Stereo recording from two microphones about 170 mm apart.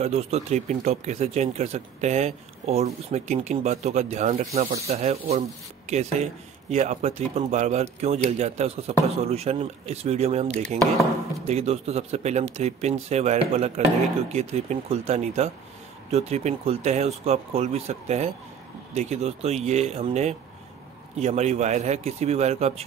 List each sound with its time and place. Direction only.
0.0 s speech: 40° right (ahead or behind)